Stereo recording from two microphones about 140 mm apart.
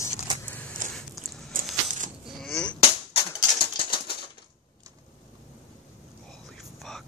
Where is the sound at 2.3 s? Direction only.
Centre (ahead or behind).